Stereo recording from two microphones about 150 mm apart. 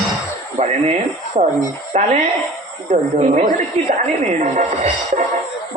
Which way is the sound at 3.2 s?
50° right (ahead or behind).